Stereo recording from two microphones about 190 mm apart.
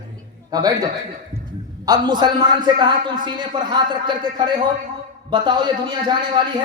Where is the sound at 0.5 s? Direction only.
20° right (ahead or behind).